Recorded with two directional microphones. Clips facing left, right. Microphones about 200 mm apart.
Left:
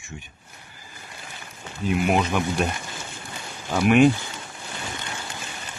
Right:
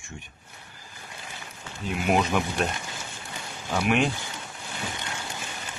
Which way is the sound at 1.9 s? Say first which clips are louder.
Left 2 dB; centre (ahead or behind).